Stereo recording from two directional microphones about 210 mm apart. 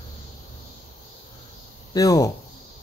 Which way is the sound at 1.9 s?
15° left (ahead or behind).